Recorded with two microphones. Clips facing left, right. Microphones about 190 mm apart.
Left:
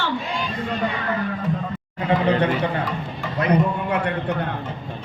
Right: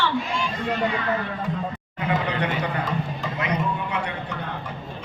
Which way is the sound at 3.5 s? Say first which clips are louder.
Left 8 dB; 55° left (ahead or behind).